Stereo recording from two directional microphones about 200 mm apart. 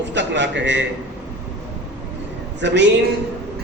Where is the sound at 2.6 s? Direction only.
60° right (ahead or behind).